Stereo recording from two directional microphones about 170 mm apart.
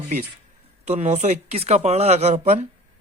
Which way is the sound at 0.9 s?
40° right (ahead or behind).